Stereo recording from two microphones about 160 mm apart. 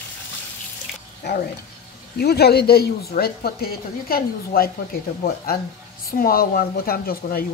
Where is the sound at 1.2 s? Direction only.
90° left.